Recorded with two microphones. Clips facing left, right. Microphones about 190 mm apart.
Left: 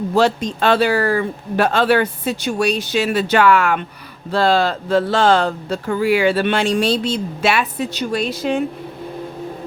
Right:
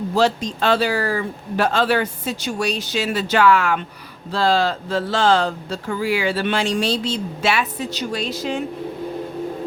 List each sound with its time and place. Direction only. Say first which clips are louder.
0.1 s speech: left 2 dB; 55° left (ahead or behind)